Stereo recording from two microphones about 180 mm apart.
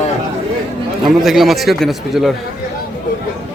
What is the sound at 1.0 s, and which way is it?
A man's voice, centre (ahead or behind).